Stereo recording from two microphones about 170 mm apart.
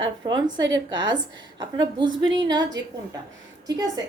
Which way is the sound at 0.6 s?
90° right.